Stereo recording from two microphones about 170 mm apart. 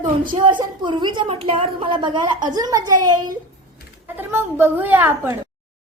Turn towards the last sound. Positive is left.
turn(degrees=-10)  # may be behind; listen again after turning